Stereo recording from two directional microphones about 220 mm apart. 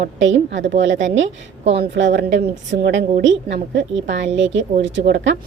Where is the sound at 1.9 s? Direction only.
55° right (ahead or behind).